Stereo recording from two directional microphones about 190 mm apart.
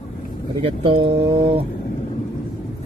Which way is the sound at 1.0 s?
70° right (ahead or behind).